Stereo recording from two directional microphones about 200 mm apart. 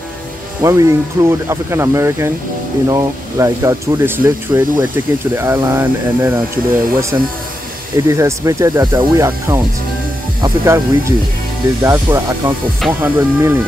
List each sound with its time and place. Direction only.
0.6 s speech: 15° right (ahead or behind)